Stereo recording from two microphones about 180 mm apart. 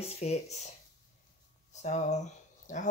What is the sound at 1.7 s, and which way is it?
Speech, 40° left (ahead or behind).